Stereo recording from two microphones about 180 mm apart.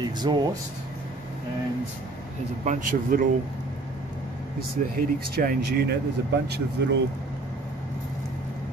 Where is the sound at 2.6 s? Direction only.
45° right (ahead or behind).